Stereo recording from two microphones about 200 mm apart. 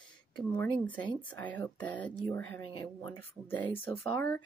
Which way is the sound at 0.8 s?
10° left (ahead or behind).